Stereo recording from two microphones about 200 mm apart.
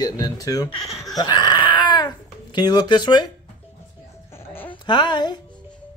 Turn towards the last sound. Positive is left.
turn(degrees=20)  # may be behind; listen again after turning